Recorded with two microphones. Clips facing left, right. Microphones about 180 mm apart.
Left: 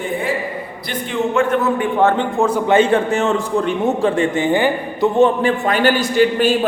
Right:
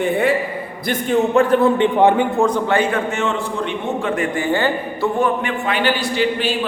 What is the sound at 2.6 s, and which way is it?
A man's voice, 25° left (ahead or behind).